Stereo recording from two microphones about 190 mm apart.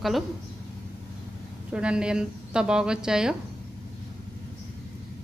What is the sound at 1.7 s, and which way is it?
A woman's voice, 5° right (ahead or behind).